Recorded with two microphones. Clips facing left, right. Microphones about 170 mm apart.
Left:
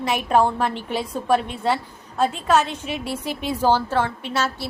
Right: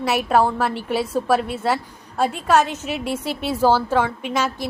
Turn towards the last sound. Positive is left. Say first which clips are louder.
# right 2 dB
turn(degrees=-10)  # may be behind; listen again after turning